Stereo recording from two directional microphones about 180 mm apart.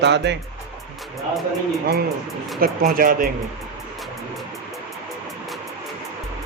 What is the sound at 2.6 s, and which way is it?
Speech, 55° right (ahead or behind).